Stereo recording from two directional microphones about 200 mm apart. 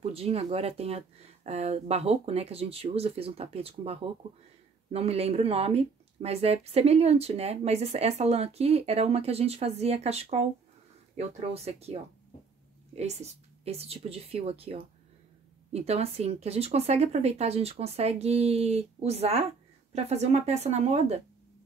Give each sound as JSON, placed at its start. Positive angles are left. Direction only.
{"t": 0.0, "sound": "a woman's voice", "side_deg": -30}